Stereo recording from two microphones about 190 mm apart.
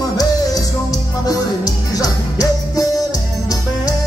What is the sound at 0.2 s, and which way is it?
Music, 20° left (ahead or behind).